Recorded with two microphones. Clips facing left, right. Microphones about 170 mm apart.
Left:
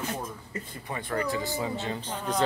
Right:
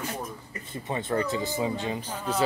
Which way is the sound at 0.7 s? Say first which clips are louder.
Right 5 dB; 20° right (ahead or behind).